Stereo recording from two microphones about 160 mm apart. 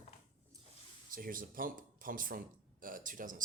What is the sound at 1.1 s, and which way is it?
Speech, 60° right (ahead or behind).